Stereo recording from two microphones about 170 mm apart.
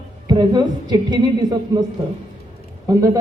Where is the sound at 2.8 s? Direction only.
20° right (ahead or behind).